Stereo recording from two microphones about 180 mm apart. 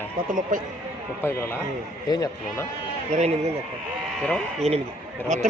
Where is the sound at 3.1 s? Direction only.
35° right (ahead or behind).